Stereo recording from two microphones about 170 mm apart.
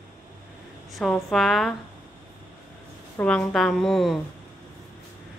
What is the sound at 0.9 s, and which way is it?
Speech, centre (ahead or behind).